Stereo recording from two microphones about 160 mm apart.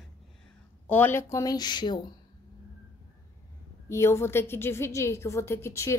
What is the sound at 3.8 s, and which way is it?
A woman's voice, 15° left (ahead or behind).